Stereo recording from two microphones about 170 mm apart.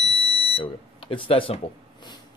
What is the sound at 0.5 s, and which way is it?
Speech, 30° left (ahead or behind).